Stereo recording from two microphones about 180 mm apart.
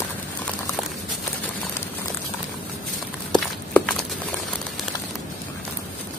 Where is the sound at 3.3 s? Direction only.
5° left (ahead or behind).